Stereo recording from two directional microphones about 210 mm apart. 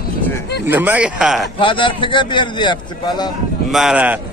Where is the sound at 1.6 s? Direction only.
25° left (ahead or behind).